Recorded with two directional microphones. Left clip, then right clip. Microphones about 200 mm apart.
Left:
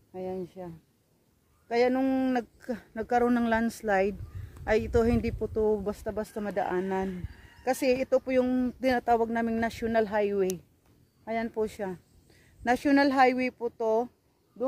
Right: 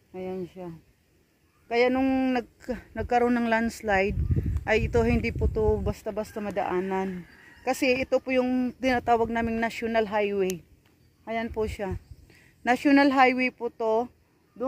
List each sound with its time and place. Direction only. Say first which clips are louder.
0.1 s speech: right 1 dB; 15° right (ahead or behind)